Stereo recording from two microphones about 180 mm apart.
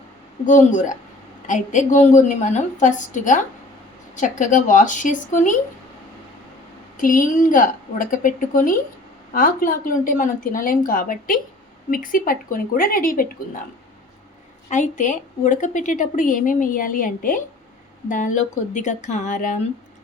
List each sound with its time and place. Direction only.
0.4 s a woman's voice: 45° left (ahead or behind)
6.9 s a woman's voice: 50° left (ahead or behind)
14.7 s a woman's voice: 45° left (ahead or behind)